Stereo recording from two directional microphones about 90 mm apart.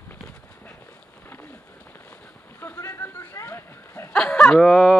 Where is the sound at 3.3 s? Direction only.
30° left (ahead or behind).